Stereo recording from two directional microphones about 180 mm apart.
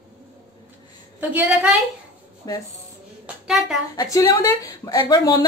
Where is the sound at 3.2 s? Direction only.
5° right (ahead or behind).